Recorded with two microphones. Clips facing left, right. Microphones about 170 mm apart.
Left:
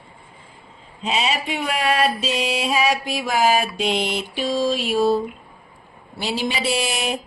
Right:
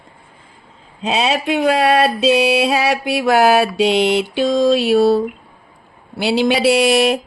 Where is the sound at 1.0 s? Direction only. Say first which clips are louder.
Right 6 dB; 75° right (ahead or behind).